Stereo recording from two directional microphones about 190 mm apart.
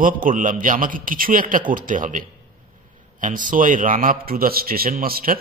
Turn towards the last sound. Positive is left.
turn(degrees=-50)  # may be behind; listen again after turning